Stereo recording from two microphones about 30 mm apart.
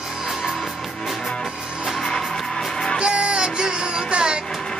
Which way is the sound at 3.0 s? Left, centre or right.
Right.